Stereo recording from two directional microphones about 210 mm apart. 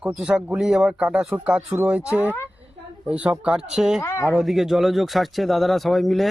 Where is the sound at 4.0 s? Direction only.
10° left (ahead or behind).